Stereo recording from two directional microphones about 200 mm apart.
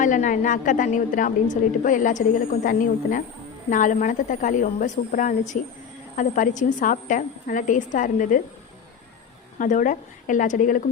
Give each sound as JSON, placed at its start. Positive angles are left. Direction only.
{"t": 0.0, "sound": "a woman's voice", "side_deg": 40}
{"t": 9.6, "sound": "a woman's voice", "side_deg": 40}